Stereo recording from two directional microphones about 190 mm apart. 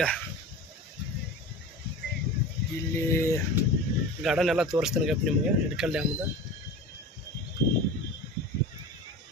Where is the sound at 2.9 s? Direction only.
15° left (ahead or behind).